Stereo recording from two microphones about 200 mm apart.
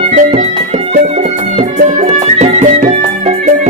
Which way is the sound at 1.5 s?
35° right (ahead or behind).